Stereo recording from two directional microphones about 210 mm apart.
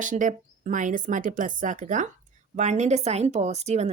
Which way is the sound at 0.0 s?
35° right (ahead or behind).